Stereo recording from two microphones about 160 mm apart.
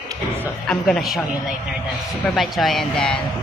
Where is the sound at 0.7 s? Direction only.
Centre (ahead or behind).